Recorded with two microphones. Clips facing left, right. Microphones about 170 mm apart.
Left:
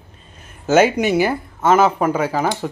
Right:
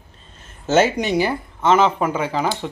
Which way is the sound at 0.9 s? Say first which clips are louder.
Left 3 dB; 5° left (ahead or behind).